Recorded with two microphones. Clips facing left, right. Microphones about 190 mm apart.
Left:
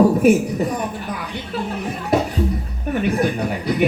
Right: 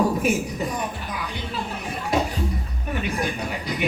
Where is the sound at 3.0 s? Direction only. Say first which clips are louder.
Left 8 dB; 60° left (ahead or behind).